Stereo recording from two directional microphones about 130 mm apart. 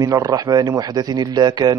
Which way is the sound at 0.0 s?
25° right (ahead or behind).